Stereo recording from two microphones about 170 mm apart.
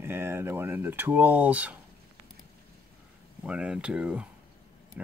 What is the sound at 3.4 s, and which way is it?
Speech, 5° right (ahead or behind).